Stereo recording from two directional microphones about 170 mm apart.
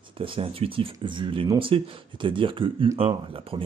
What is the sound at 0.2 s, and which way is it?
Speech, 35° right (ahead or behind).